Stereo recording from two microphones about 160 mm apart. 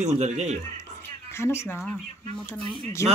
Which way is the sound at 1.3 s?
15° left (ahead or behind).